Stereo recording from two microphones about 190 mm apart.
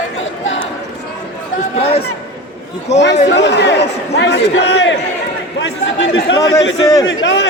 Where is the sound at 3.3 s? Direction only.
65° left (ahead or behind).